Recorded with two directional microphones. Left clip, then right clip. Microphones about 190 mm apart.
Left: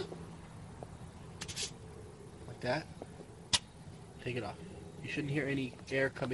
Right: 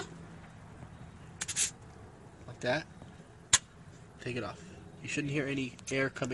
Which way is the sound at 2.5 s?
40° right (ahead or behind).